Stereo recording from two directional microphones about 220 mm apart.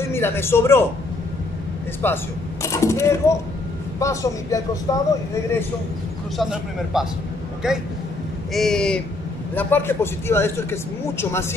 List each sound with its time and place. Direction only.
0.0 s speech: 10° left (ahead or behind)
2.0 s a man's voice: 10° left (ahead or behind)
6.3 s a man's voice: centre (ahead or behind)